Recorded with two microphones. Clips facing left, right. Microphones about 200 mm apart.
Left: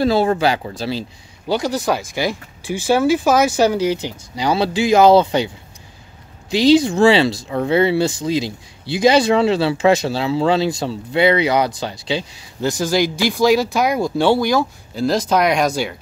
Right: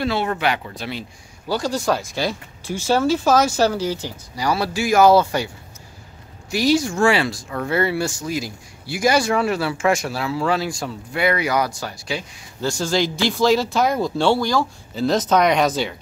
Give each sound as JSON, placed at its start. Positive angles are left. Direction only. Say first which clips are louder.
{"t": 0.0, "sound": "speech", "louder": "left 6 dB", "side_deg": 35}
{"t": 1.5, "sound": "speech", "louder": "left 2 dB", "side_deg": 20}
{"t": 6.5, "sound": "speech", "louder": "left 6 dB", "side_deg": 20}